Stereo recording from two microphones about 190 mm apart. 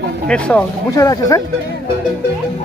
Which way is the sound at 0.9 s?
20° left (ahead or behind).